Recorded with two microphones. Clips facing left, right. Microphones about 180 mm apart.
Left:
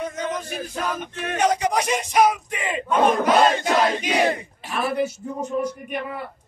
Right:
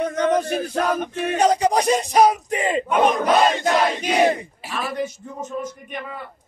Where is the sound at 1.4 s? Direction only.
35° right (ahead or behind).